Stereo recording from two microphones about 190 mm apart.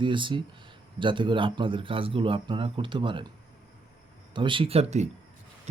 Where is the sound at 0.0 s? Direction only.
25° right (ahead or behind).